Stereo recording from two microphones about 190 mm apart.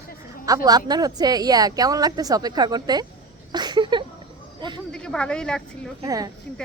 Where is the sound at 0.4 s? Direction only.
20° right (ahead or behind).